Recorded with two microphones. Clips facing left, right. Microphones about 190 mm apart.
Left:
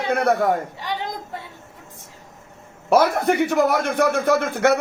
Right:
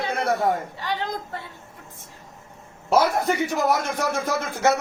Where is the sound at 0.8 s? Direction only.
15° left (ahead or behind).